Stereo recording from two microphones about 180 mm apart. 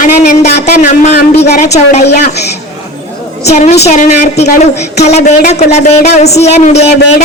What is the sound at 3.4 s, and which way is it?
Speech, 35° left (ahead or behind).